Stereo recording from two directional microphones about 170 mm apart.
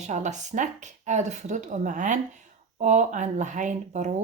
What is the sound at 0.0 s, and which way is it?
Speech, 45° right (ahead or behind).